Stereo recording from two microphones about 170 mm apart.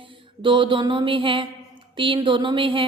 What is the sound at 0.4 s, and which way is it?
A woman's voice, 30° right (ahead or behind).